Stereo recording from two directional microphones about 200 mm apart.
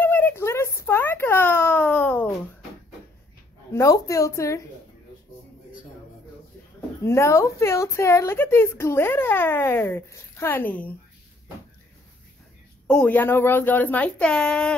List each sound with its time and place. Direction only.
0.0 s baby cry: 10° left (ahead or behind)
3.7 s speech: 15° left (ahead or behind)
7.0 s speech: 15° left (ahead or behind)
12.8 s speech: 5° left (ahead or behind)